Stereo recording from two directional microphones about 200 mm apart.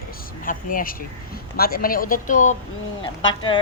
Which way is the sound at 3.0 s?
25° left (ahead or behind).